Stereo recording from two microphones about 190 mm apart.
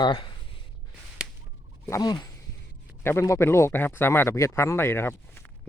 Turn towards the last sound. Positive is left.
turn(degrees=10)  # may be behind; listen again after turning